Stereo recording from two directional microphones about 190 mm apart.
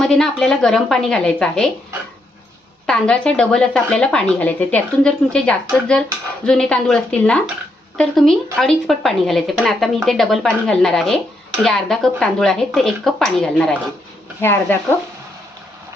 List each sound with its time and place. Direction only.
0.0 s speech: centre (ahead or behind)
2.8 s speech: 5° left (ahead or behind)